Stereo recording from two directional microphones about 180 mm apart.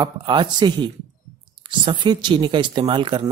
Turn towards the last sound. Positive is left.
turn(degrees=-25)  # may be behind; listen again after turning